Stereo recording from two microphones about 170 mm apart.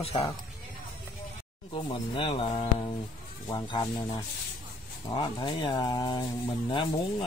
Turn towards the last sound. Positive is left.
turn(degrees=25)  # may be behind; listen again after turning